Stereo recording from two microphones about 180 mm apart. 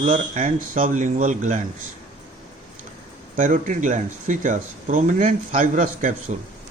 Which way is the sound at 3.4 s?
45° right (ahead or behind).